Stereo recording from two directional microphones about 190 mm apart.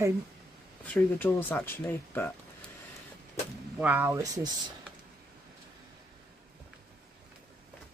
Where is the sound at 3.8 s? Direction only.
10° right (ahead or behind).